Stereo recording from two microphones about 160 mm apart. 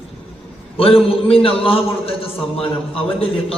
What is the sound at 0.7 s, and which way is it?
A man's voice, 35° left (ahead or behind).